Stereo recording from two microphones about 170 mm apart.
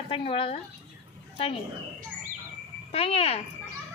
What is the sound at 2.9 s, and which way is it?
Speech, 35° left (ahead or behind).